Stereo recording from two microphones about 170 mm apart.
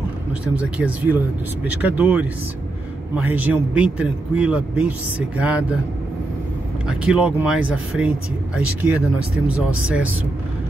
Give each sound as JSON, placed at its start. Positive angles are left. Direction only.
{"t": 0.6, "sound": "a man's voice", "side_deg": -5}
{"t": 6.9, "sound": "a man's voice", "side_deg": -5}